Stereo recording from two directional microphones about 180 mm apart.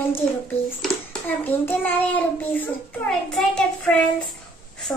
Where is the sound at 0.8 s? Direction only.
10° left (ahead or behind).